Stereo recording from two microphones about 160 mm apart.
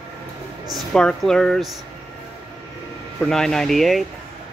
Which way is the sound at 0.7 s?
5° left (ahead or behind).